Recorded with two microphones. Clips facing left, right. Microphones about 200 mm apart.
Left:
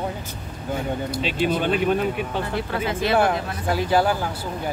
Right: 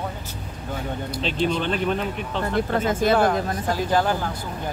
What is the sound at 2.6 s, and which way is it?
Speech, 45° right (ahead or behind).